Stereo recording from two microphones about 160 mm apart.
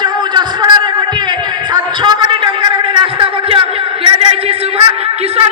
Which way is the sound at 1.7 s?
25° right (ahead or behind).